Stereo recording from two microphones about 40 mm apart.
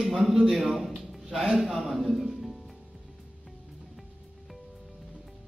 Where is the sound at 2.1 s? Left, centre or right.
Centre.